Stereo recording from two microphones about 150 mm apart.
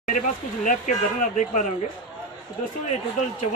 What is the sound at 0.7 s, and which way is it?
Speech, 60° left (ahead or behind).